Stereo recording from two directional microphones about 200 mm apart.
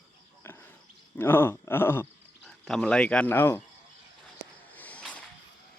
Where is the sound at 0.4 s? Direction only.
10° left (ahead or behind).